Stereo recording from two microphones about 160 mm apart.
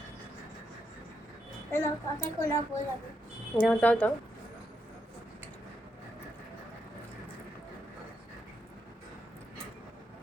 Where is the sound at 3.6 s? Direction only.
10° left (ahead or behind).